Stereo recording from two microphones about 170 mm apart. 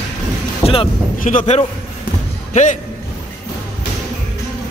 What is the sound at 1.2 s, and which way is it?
A man's voice, 50° left (ahead or behind).